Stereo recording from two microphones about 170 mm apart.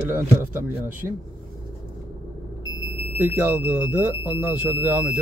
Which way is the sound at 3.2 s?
10° right (ahead or behind).